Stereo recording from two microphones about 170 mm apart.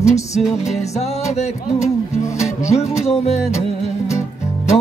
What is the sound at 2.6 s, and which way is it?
Music, 40° left (ahead or behind).